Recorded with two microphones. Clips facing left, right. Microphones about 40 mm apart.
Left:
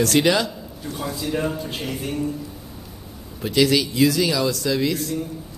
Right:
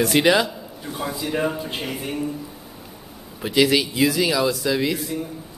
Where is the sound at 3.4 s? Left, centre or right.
Centre.